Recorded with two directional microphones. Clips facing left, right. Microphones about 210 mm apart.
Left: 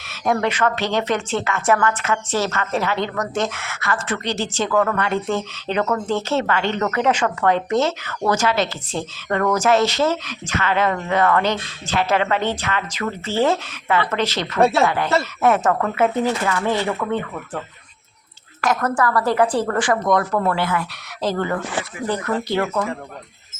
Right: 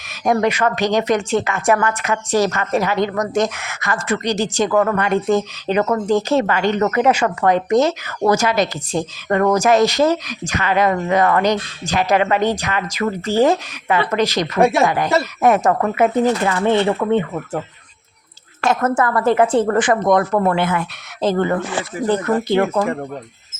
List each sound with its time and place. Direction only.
0.3 s a woman's voice: 15° right (ahead or behind)
18.6 s a woman's voice: 25° right (ahead or behind)